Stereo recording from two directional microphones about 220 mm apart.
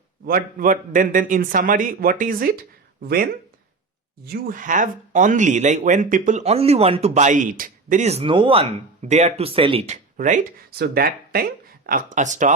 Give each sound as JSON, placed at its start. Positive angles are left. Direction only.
{"t": 0.3, "sound": "speech", "side_deg": -40}
{"t": 4.2, "sound": "speech", "side_deg": -40}